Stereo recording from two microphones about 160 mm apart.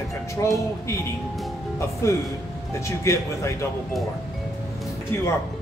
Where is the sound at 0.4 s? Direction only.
15° left (ahead or behind).